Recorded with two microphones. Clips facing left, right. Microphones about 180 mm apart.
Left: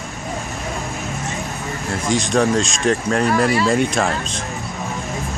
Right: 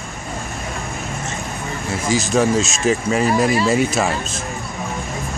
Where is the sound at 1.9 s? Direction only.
5° right (ahead or behind).